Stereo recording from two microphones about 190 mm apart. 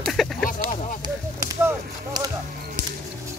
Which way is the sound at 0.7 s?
40° left (ahead or behind).